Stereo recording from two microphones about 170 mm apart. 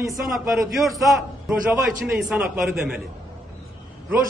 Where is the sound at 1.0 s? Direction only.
10° right (ahead or behind).